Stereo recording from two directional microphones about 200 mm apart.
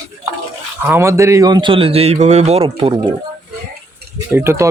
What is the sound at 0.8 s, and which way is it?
A man's voice, 15° right (ahead or behind).